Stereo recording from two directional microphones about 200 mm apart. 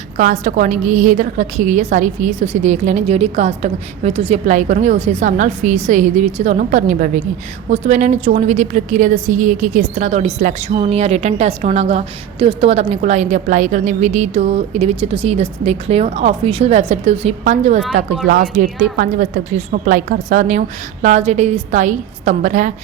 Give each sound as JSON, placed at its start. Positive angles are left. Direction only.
{"t": 0.2, "sound": "a woman's voice", "side_deg": -40}